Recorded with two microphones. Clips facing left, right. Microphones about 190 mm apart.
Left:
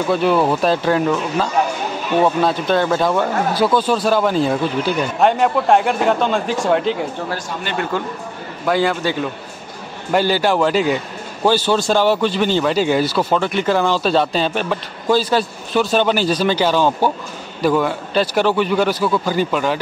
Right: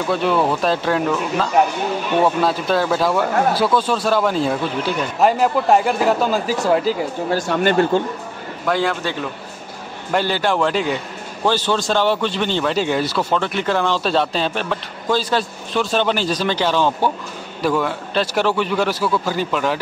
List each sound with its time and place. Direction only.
0.1 s a man's voice: 5° left (ahead or behind)
7.4 s speech: 65° right (ahead or behind)
7.7 s speech: 30° right (ahead or behind)
8.6 s a man's voice: 5° left (ahead or behind)
10.1 s a man's voice: 5° left (ahead or behind)